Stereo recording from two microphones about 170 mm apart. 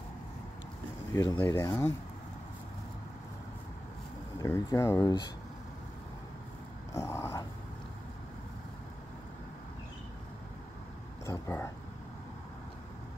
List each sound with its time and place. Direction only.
1.3 s speech: 15° left (ahead or behind)
4.4 s speech: 20° left (ahead or behind)
6.9 s speech: 15° left (ahead or behind)
11.2 s speech: 15° left (ahead or behind)